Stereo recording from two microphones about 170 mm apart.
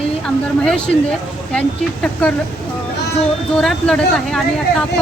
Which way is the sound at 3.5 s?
5° left (ahead or behind).